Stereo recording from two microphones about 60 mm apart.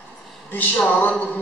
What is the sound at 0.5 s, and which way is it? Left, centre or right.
Speech, left.